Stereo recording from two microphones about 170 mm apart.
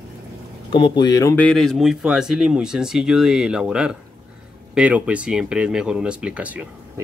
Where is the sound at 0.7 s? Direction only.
30° left (ahead or behind).